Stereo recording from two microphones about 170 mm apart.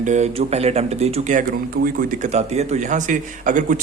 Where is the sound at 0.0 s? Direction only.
45° right (ahead or behind).